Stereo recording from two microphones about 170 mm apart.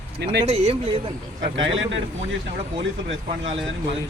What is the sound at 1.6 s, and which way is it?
Speech, 90° right.